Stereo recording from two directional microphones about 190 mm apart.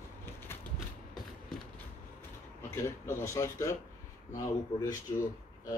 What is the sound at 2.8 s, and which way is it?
Speech, 15° left (ahead or behind).